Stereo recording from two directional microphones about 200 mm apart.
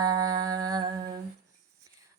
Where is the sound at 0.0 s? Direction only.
20° right (ahead or behind).